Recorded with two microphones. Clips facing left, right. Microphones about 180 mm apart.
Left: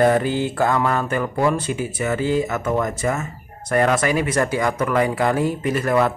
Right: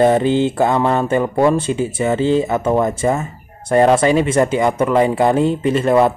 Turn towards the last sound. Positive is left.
turn(degrees=-25)  # may be behind; listen again after turning